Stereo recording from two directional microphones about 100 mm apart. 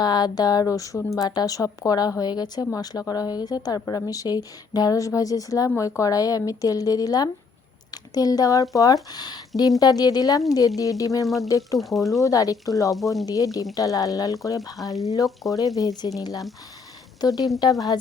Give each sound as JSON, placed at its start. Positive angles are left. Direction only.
{"t": 0.0, "sound": "a woman's voice", "side_deg": 45}
{"t": 11.8, "sound": "speech", "side_deg": 0}
{"t": 12.2, "sound": "a woman's voice", "side_deg": 35}
{"t": 13.0, "sound": "speech", "side_deg": 0}
{"t": 13.2, "sound": "a woman's voice", "side_deg": 35}